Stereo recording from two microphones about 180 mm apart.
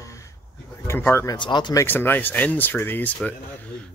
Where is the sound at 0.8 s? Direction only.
10° left (ahead or behind).